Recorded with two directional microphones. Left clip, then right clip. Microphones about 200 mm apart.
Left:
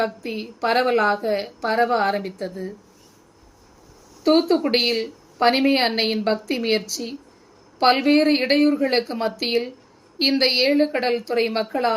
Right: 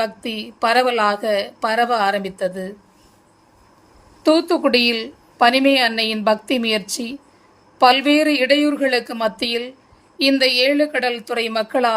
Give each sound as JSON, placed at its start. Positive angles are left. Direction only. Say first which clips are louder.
{"t": 0.0, "sound": "a woman's voice", "louder": "right 2 dB", "side_deg": -50}
{"t": 4.2, "sound": "a woman's voice", "louder": "right 3 dB", "side_deg": -50}